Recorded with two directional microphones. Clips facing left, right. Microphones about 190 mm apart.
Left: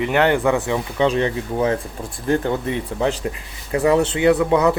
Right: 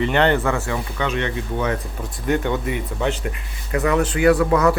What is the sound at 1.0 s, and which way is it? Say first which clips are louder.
Speech: left 7 dB; 30° left (ahead or behind).